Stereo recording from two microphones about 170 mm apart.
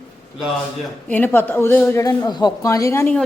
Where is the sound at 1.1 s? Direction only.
10° left (ahead or behind).